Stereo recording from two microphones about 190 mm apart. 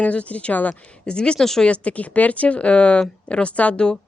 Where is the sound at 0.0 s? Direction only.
5° left (ahead or behind).